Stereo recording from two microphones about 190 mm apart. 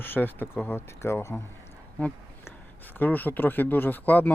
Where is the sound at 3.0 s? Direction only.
10° left (ahead or behind).